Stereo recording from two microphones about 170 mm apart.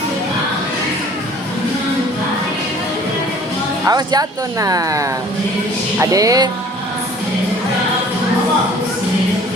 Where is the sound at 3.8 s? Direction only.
20° right (ahead or behind).